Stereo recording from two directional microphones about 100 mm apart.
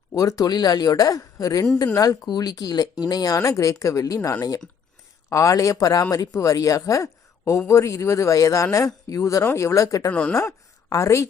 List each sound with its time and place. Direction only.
0.2 s speech: 35° left (ahead or behind)
10.1 s speech: 15° left (ahead or behind)
10.3 s a woman's voice: 30° left (ahead or behind)